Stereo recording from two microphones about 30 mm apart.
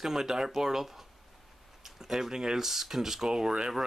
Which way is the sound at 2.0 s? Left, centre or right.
Centre.